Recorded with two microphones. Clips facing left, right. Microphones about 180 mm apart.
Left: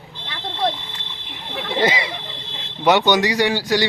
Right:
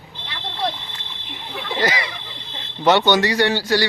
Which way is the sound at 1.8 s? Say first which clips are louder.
Left 2 dB; 25° left (ahead or behind).